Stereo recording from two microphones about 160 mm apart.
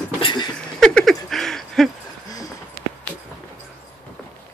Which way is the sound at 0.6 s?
5° left (ahead or behind).